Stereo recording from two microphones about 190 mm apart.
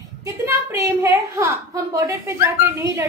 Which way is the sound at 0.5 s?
15° right (ahead or behind).